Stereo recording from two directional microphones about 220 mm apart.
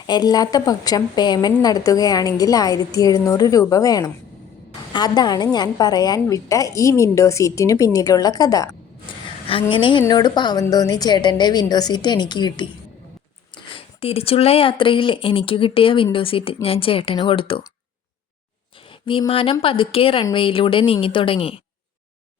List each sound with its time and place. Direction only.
0.1 s a woman's voice: 20° left (ahead or behind)
13.7 s a woman's voice: 25° left (ahead or behind)
18.9 s a woman's voice: 20° left (ahead or behind)